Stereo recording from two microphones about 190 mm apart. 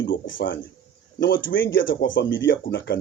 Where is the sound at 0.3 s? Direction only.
80° left.